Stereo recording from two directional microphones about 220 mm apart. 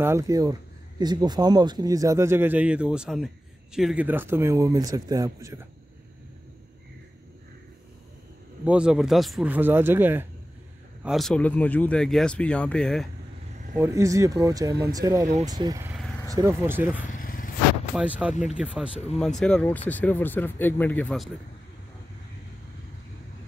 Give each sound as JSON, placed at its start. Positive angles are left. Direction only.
{"t": 0.0, "sound": "speech", "side_deg": -15}
{"t": 8.6, "sound": "speech", "side_deg": -5}
{"t": 11.1, "sound": "speech", "side_deg": 0}
{"t": 13.7, "sound": "speech", "side_deg": -15}
{"t": 17.0, "sound": "vehicle", "side_deg": 35}
{"t": 17.9, "sound": "speech", "side_deg": -5}